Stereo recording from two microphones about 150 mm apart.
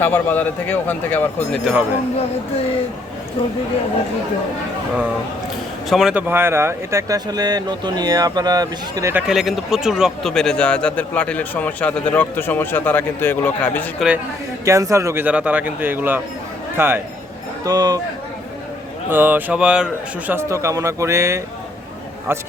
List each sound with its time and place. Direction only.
0.0 s speech: 10° left (ahead or behind)
1.7 s speech: 5° right (ahead or behind)
5.9 s speech: 5° right (ahead or behind)
6.2 s speech: 15° right (ahead or behind)
9.1 s speech: centre (ahead or behind)
14.6 s a man's voice: 20° right (ahead or behind)
17.7 s speech: 25° right (ahead or behind)
19.1 s a man's voice: 10° right (ahead or behind)